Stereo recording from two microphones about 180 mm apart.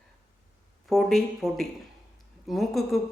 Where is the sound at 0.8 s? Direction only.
Centre (ahead or behind).